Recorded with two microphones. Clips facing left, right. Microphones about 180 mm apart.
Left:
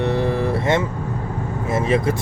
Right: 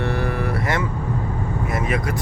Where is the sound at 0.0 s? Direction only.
20° left (ahead or behind).